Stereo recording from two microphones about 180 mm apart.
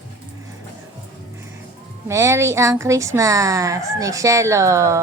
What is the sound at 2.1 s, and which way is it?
Speech, 15° right (ahead or behind).